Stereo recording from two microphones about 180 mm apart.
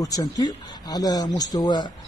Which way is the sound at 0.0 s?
20° left (ahead or behind).